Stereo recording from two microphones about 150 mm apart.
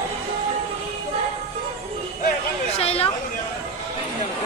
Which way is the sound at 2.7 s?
40° left (ahead or behind).